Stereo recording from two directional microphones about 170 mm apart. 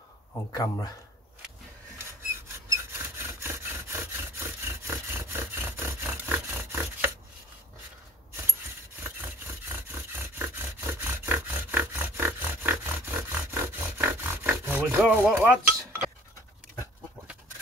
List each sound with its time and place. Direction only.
0.5 s speech: 20° left (ahead or behind)
3.0 s wood: 15° right (ahead or behind)
9.7 s a sound: 15° right (ahead or behind)
15.4 s dishes: 15° right (ahead or behind)